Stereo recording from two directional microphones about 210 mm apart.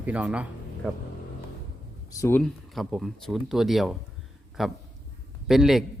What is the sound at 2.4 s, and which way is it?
A man's voice, centre (ahead or behind).